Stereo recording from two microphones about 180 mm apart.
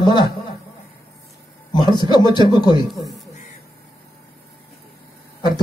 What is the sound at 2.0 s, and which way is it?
Speech, 25° left (ahead or behind).